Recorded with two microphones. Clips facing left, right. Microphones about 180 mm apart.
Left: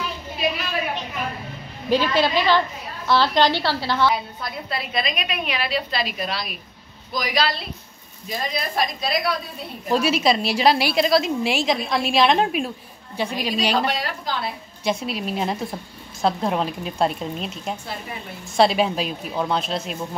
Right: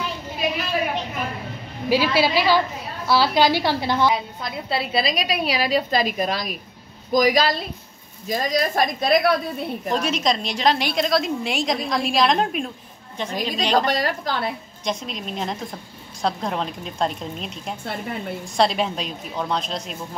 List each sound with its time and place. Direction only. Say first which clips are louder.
1.9 s a woman's voice: even; 10° right (ahead or behind)
4.6 s a woman's voice: right 4 dB; 30° right (ahead or behind); by 9.3 s 50° right (ahead or behind)
9.8 s a woman's voice: left 4 dB; 5° left (ahead or behind)
13.7 s a woman's voice: right 3 dB; 45° right (ahead or behind)
14.9 s a woman's voice: left 4 dB; 10° left (ahead or behind)